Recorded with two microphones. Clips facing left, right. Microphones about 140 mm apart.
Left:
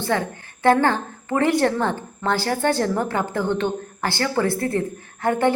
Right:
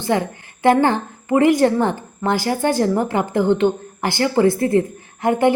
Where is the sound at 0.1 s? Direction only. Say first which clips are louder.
Right 5 dB; 15° right (ahead or behind).